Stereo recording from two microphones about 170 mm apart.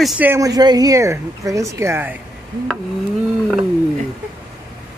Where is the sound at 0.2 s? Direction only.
15° right (ahead or behind).